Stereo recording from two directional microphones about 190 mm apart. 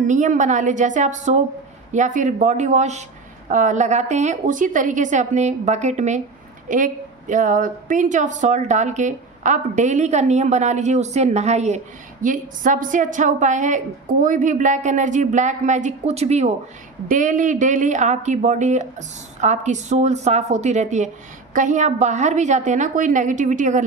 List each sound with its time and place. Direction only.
0.0 s a woman's voice: 40° right (ahead or behind)